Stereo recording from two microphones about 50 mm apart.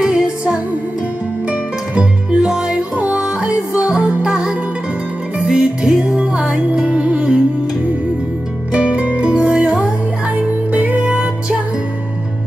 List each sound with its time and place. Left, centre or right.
0.0 s music: centre
2.0 s music: centre
8.7 s music: right